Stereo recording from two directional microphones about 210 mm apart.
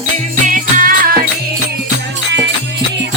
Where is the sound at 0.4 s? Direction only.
40° right (ahead or behind).